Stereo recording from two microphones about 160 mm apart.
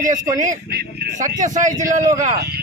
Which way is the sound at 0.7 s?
80° right.